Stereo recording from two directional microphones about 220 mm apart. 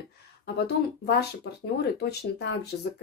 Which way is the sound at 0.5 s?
45° left (ahead or behind).